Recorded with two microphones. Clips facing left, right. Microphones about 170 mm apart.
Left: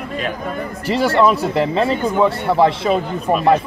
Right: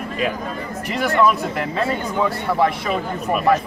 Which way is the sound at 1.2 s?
30° left (ahead or behind).